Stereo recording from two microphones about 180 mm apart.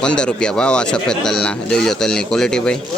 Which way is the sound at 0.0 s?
5° left (ahead or behind).